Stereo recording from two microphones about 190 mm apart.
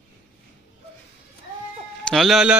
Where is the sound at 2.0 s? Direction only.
Centre (ahead or behind).